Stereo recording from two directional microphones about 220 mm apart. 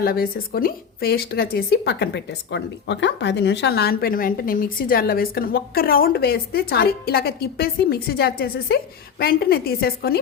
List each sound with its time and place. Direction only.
0.0 s a woman's voice: 45° left (ahead or behind)